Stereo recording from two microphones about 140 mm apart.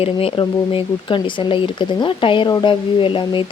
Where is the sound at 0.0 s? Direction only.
45° left (ahead or behind).